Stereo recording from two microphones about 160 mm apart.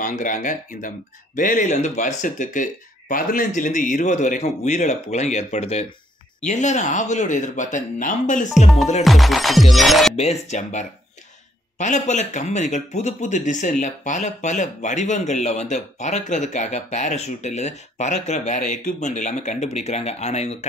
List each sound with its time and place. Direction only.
0.0 s speech: 55° left (ahead or behind)
9.0 s music: centre (ahead or behind)
10.1 s speech: 40° left (ahead or behind)